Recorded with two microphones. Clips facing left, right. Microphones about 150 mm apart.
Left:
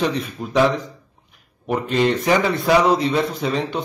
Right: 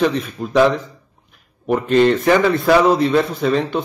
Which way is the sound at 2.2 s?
50° right (ahead or behind).